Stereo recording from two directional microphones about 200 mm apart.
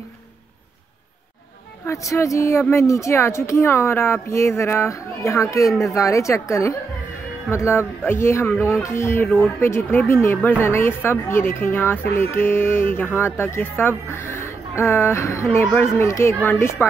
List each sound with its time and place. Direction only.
1.9 s speech: 15° left (ahead or behind)